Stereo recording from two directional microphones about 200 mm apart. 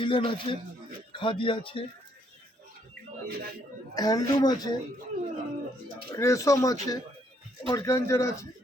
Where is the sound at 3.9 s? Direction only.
20° left (ahead or behind).